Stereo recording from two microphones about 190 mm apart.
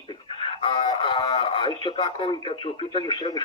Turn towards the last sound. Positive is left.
turn(degrees=25)  # may be behind; listen again after turning